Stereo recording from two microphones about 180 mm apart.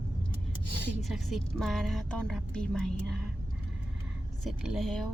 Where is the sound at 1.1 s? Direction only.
Centre (ahead or behind).